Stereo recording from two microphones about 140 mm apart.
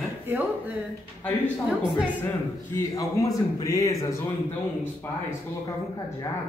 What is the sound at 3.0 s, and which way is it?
Speech, 25° left (ahead or behind).